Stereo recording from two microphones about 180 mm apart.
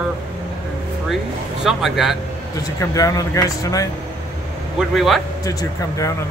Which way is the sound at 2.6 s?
20° left (ahead or behind).